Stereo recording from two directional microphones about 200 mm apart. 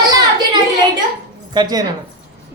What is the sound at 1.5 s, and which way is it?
Speech, 20° right (ahead or behind).